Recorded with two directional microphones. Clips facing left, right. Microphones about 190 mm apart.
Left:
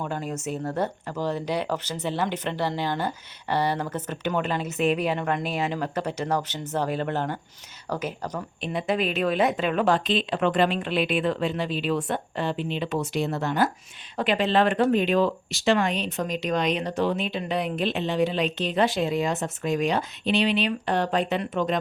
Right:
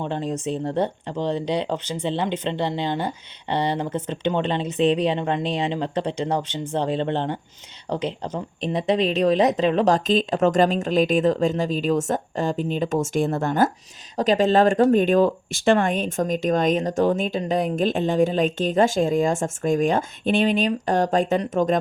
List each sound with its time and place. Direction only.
0.0 s a woman's voice: 30° right (ahead or behind)
1.3 s speech: 15° right (ahead or behind)
4.0 s a woman's voice: 25° right (ahead or behind); by 21.8 s 45° right (ahead or behind)